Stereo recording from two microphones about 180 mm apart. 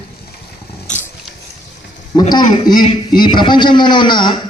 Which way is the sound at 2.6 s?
20° left (ahead or behind).